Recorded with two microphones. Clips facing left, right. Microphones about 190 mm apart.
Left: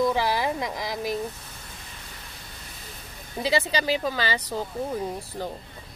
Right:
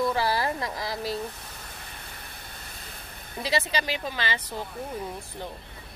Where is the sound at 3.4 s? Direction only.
30° left (ahead or behind).